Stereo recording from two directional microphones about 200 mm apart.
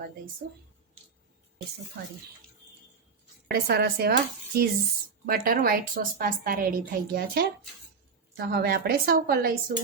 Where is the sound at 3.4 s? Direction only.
55° right (ahead or behind).